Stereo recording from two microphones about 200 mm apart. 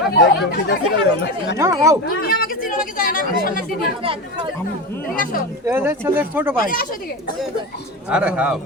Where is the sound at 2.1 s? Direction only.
50° left (ahead or behind).